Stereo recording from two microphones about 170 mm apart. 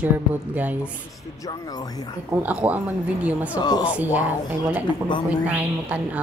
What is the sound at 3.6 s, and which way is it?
Speech, 25° left (ahead or behind).